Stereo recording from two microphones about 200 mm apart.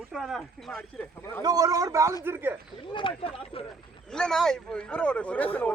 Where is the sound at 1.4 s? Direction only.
20° right (ahead or behind).